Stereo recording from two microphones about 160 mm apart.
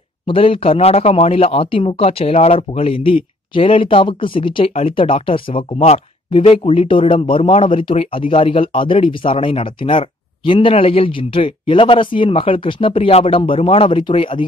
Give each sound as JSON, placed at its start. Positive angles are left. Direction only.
{"t": 0.3, "sound": "speech", "side_deg": 35}